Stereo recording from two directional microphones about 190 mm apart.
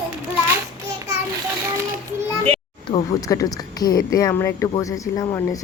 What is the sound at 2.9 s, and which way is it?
Speech, 20° left (ahead or behind).